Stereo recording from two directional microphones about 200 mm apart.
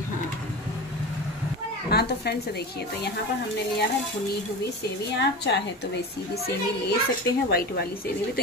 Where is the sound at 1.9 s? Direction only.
55° left (ahead or behind).